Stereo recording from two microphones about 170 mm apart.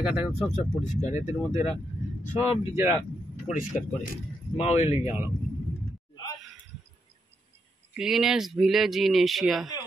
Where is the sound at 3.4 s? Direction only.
45° left (ahead or behind).